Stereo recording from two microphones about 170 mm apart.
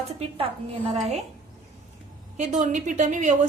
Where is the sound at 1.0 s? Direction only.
40° right (ahead or behind).